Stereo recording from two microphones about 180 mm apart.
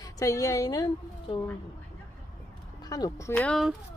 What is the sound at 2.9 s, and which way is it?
Speech, 20° left (ahead or behind).